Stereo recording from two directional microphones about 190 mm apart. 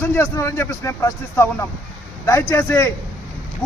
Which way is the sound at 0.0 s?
15° left (ahead or behind).